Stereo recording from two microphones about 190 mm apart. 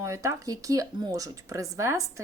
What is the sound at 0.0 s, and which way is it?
A woman's voice, 15° right (ahead or behind).